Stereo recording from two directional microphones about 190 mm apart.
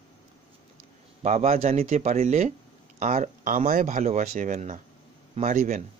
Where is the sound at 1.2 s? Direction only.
35° right (ahead or behind).